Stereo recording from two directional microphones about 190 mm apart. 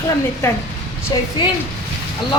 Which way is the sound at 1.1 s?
20° left (ahead or behind).